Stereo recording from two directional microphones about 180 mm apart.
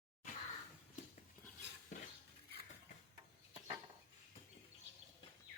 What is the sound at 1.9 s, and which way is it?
Cutlery, 40° left (ahead or behind).